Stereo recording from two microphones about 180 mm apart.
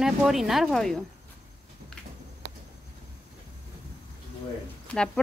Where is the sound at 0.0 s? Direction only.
Centre (ahead or behind).